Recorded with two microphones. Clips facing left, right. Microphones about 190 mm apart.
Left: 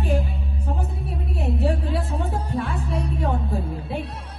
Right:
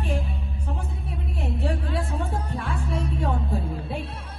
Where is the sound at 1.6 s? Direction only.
Centre (ahead or behind).